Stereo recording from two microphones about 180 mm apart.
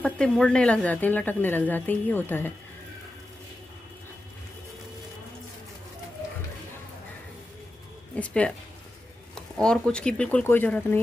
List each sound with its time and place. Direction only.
0.0 s speech: 5° left (ahead or behind)
8.2 s speech: 5° left (ahead or behind)